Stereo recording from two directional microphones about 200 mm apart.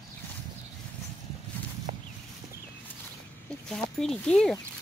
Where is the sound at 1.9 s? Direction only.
40° right (ahead or behind).